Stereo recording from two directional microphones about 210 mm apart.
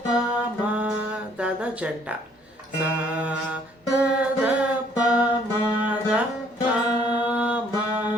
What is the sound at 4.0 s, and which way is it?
Music, 5° right (ahead or behind).